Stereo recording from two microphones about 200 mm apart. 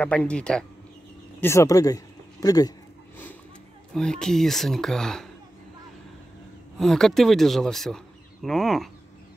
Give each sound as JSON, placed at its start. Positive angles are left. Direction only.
{"t": 0.0, "sound": "speech", "side_deg": 5}
{"t": 3.9, "sound": "speech", "side_deg": 5}
{"t": 6.8, "sound": "speech", "side_deg": 0}